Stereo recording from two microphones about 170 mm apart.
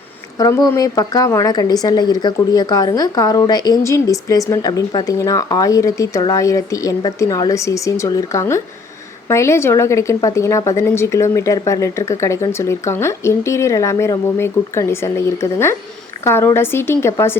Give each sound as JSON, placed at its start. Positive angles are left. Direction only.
{"t": 0.3, "sound": "a woman's voice", "side_deg": 20}